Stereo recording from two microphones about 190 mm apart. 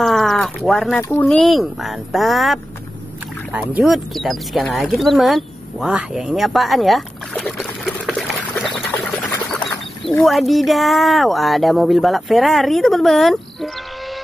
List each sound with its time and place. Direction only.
0.0 s a sound: centre (ahead or behind)
1.2 s speech: centre (ahead or behind)
10.0 s speech: 25° left (ahead or behind)
10.5 s speech: centre (ahead or behind)